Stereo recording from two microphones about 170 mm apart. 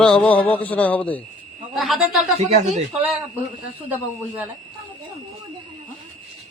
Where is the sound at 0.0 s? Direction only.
5° left (ahead or behind).